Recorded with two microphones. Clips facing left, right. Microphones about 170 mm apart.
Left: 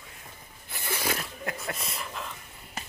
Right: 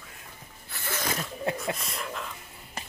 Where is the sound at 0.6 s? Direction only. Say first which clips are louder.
Left 1 dB; 15° left (ahead or behind).